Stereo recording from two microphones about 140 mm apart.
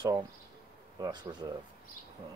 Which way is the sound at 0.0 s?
25° right (ahead or behind).